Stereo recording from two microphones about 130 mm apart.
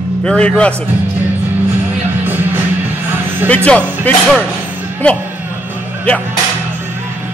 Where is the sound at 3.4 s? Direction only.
10° left (ahead or behind).